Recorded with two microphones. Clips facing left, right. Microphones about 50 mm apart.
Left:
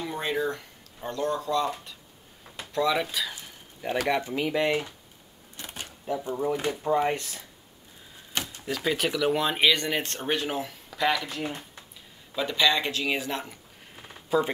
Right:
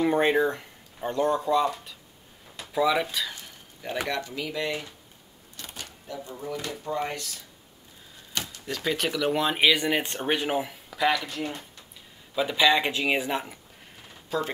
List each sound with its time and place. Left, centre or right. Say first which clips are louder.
0.0 s speech: right 7 dB; right; by 1.7 s centre
2.7 s a sound: right 2 dB; centre
4.1 s speech: left 5 dB; left
5.6 s a sound: left 1 dB; left
6.1 s speech: left 6 dB; left
8.4 s typewriter: left 1 dB; left
8.6 s speech: left 1 dB; centre
12.4 s speech: right 2 dB; centre
14.3 s speech: left 4 dB; centre